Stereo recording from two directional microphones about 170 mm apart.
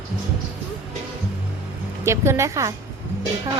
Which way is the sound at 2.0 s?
15° right (ahead or behind).